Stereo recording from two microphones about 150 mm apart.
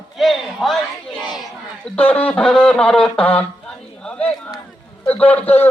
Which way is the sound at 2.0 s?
10° left (ahead or behind).